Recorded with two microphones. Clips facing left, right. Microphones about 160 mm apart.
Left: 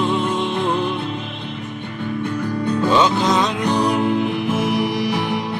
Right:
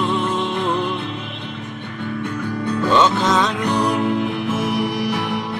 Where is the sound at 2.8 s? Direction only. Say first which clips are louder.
Right 1 dB; 5° left (ahead or behind).